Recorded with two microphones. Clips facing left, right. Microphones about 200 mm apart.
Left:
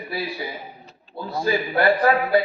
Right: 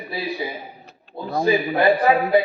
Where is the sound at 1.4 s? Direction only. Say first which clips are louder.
Right 2 dB; 20° right (ahead or behind).